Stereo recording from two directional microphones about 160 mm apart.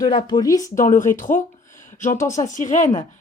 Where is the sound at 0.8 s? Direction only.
55° left (ahead or behind).